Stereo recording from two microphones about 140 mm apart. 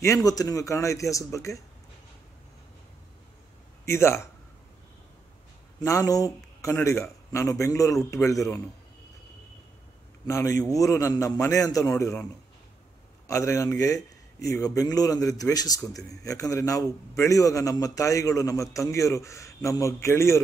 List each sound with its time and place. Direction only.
0.0 s a man's voice: 25° left (ahead or behind)
3.9 s a man's voice: 20° left (ahead or behind)
5.8 s a man's voice: 25° left (ahead or behind)
10.2 s a man's voice: 20° left (ahead or behind)
13.3 s a man's voice: 20° left (ahead or behind)